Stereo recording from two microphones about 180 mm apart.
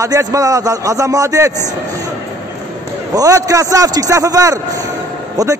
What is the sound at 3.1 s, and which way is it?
A man's voice, 20° right (ahead or behind).